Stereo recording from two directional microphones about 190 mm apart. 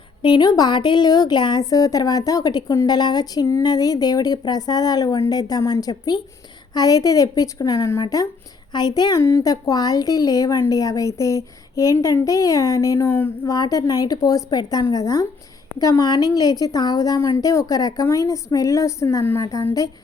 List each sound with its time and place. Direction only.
0.2 s speech: 25° left (ahead or behind)